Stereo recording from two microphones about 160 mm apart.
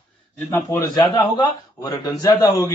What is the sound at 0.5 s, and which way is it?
A man's voice, 25° left (ahead or behind).